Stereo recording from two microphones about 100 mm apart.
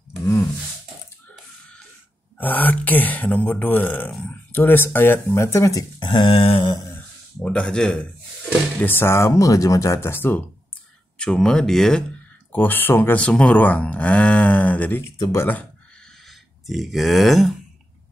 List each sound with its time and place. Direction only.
0.2 s a sound: 25° left (ahead or behind)
2.3 s speech: 15° left (ahead or behind); by 5.9 s 35° left (ahead or behind)
5.9 s a sound: 55° left (ahead or behind)
7.4 s speech: 10° left (ahead or behind)
8.8 s speech: 20° left (ahead or behind)
11.1 s speech: 5° left (ahead or behind)
12.5 s speech: 20° left (ahead or behind)
16.3 s speech: centre (ahead or behind)